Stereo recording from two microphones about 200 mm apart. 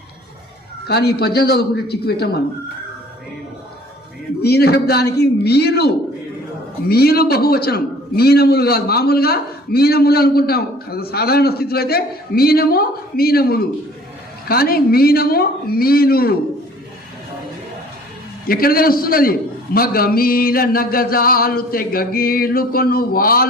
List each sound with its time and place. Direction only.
0.9 s a man's voice: 55° left (ahead or behind)
4.4 s a man's voice: 55° left (ahead or behind)
18.4 s a man's voice: 45° left (ahead or behind)